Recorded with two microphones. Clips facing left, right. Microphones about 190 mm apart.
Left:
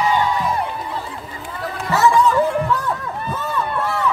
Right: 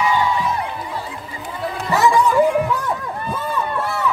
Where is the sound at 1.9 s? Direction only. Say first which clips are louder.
Even; 15° right (ahead or behind).